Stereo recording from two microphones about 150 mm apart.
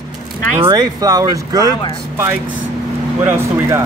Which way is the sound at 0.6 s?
30° right (ahead or behind).